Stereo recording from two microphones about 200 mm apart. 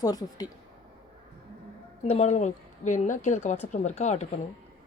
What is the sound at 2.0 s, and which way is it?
A woman's voice, 35° left (ahead or behind).